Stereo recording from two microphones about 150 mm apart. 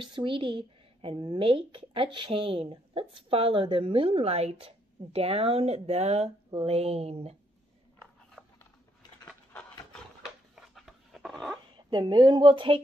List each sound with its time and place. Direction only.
0.0 s speech: 35° right (ahead or behind)
8.4 s a sound: 5° right (ahead or behind)
10.5 s dog: centre (ahead or behind)
11.7 s a woman's voice: 30° right (ahead or behind)